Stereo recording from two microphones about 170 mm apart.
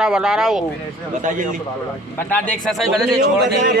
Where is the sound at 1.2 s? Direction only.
50° right (ahead or behind).